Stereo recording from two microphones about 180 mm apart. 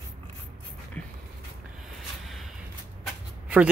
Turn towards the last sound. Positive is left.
turn(degrees=-10)  # may be behind; listen again after turning